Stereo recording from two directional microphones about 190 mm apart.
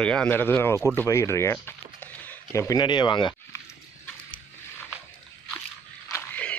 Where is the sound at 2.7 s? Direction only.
25° left (ahead or behind).